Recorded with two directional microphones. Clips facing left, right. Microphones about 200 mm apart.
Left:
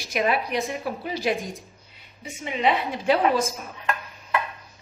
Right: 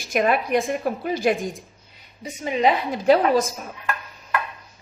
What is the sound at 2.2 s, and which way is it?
A woman's voice, 40° right (ahead or behind).